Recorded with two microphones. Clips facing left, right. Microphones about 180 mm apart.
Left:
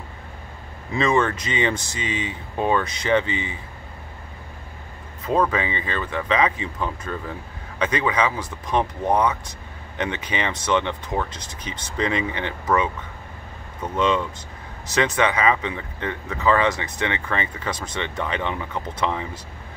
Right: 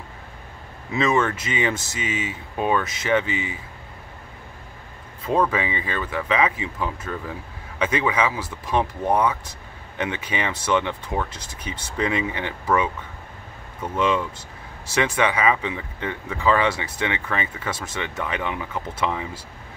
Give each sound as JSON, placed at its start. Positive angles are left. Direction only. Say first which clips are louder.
{"t": 0.9, "sound": "speech", "louder": "left 1 dB", "side_deg": -5}
{"t": 2.0, "sound": "speech", "louder": "even", "side_deg": 30}
{"t": 2.5, "sound": "speech", "louder": "left 1 dB", "side_deg": -10}
{"t": 3.3, "sound": "speech", "louder": "even", "side_deg": 30}
{"t": 5.2, "sound": "speech", "louder": "even", "side_deg": -10}
{"t": 13.9, "sound": "speech", "louder": "left 1 dB", "side_deg": -10}